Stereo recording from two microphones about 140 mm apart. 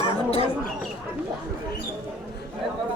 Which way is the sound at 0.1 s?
45° left (ahead or behind).